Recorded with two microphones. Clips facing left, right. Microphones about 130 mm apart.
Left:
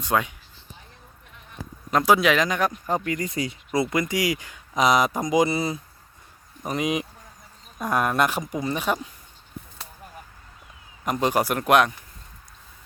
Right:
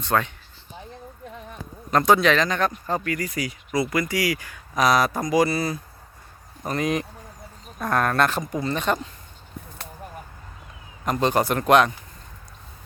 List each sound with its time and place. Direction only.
0.0 s speech: 10° left (ahead or behind)
1.9 s speech: 5° left (ahead or behind)
11.0 s speech: 10° left (ahead or behind)